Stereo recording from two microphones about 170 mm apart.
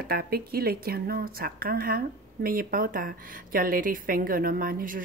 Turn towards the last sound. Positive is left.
turn(degrees=-55)  # may be behind; listen again after turning